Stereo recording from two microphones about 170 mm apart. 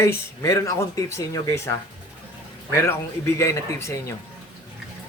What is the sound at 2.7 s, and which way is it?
Speech, 15° left (ahead or behind).